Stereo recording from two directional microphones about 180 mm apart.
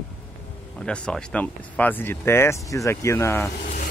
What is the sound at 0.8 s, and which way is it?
Speech, 5° left (ahead or behind).